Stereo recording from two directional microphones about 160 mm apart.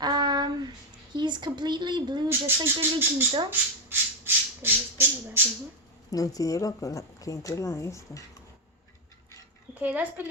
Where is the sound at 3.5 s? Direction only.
15° right (ahead or behind).